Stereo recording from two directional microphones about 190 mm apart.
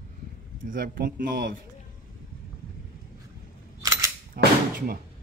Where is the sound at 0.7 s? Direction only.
50° right (ahead or behind).